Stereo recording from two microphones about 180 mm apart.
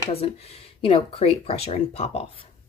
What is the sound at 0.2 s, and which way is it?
Speech, 35° left (ahead or behind).